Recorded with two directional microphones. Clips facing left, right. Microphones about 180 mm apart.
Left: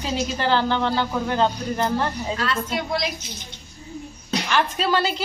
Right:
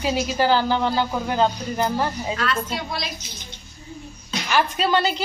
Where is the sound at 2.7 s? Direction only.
20° left (ahead or behind).